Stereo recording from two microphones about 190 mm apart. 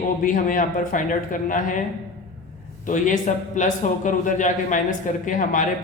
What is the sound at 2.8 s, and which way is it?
A man's voice, 45° left (ahead or behind).